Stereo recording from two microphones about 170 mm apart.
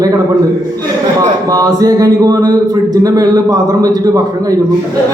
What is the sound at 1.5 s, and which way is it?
Speech, 20° right (ahead or behind).